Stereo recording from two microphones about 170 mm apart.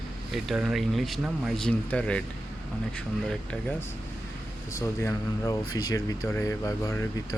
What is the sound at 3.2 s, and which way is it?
Speech, 10° left (ahead or behind).